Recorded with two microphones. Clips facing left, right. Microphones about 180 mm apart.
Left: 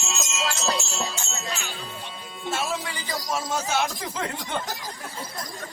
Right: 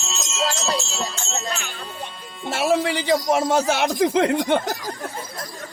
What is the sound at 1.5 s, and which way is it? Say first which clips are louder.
Speech: right 3 dB; 55° right (ahead or behind).